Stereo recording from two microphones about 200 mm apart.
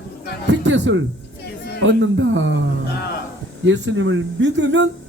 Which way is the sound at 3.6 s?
65° right (ahead or behind).